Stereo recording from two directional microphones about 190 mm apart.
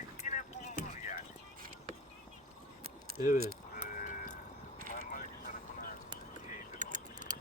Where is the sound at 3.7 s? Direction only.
45° left (ahead or behind).